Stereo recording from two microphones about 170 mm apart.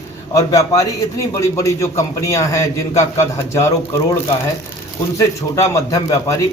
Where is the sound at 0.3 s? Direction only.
20° left (ahead or behind).